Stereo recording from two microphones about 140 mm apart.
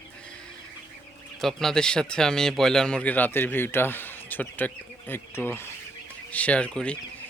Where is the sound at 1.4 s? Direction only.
5° left (ahead or behind).